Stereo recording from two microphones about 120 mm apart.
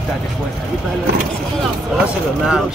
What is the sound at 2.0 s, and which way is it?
Speech, 5° right (ahead or behind).